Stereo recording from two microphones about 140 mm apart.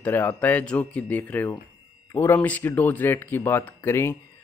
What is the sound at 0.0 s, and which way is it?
Speech, 15° left (ahead or behind).